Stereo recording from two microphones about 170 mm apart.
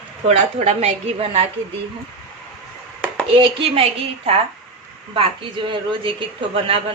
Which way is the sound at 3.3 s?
30° right (ahead or behind).